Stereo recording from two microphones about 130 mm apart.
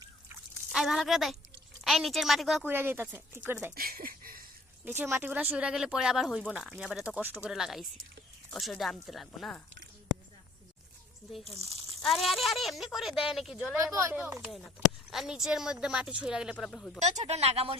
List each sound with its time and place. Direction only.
0.7 s speech: 5° right (ahead or behind)
2.6 s speech: 15° right (ahead or behind)
3.9 s a sound: 90° right
4.9 s speech: 15° right (ahead or behind); by 9.6 s 5° left (ahead or behind)
11.3 s speech: centre (ahead or behind)
13.9 s speech: 20° right (ahead or behind)
14.4 s speech: centre (ahead or behind)
16.6 s speech: 5° left (ahead or behind)
17.0 s speech: 60° right (ahead or behind)